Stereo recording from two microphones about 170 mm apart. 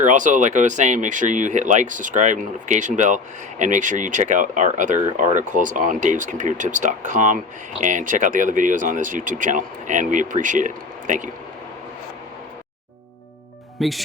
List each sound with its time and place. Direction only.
0.0 s speech: 45° right (ahead or behind)
13.7 s speech: centre (ahead or behind)